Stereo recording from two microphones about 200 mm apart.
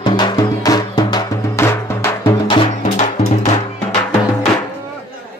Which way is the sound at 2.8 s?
40° left (ahead or behind).